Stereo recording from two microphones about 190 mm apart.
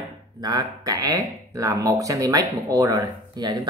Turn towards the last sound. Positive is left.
turn(degrees=-20)  # may be behind; listen again after turning